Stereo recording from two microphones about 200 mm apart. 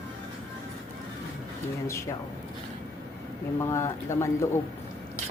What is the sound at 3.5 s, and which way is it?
Speech, 15° left (ahead or behind).